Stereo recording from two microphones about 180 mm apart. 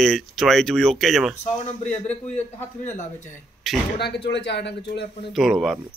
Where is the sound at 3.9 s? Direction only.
70° left (ahead or behind).